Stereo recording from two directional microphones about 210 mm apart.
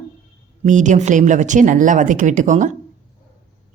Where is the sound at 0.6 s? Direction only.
35° right (ahead or behind).